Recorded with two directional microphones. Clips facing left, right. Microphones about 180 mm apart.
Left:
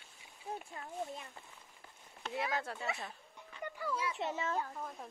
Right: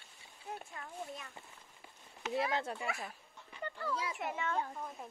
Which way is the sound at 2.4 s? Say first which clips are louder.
Right 1 dB; 25° right (ahead or behind).